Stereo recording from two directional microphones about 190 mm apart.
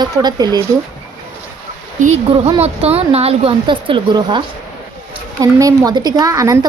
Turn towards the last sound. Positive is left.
turn(degrees=-15)  # may be behind; listen again after turning